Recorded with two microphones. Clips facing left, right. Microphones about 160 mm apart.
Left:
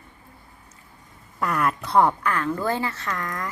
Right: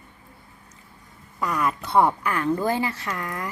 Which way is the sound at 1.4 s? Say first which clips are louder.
Left 1 dB; centre (ahead or behind).